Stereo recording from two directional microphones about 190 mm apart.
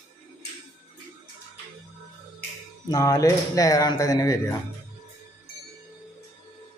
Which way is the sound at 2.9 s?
20° left (ahead or behind).